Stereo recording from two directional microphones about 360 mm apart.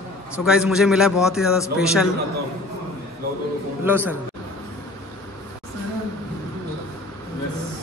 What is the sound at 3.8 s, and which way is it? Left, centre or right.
Speech, centre.